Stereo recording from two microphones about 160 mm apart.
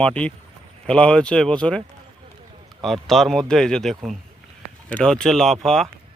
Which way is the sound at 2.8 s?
Centre (ahead or behind).